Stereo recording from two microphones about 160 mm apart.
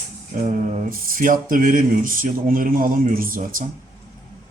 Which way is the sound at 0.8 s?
60° right (ahead or behind).